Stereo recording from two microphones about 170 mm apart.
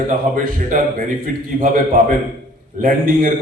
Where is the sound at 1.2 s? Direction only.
55° right (ahead or behind).